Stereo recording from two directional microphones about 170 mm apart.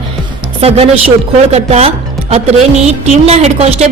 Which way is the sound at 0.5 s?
35° right (ahead or behind).